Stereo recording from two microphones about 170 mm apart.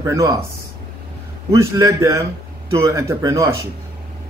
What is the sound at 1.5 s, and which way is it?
A man's voice, 20° right (ahead or behind).